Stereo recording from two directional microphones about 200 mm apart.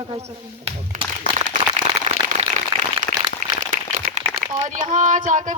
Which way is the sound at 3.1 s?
45° left (ahead or behind).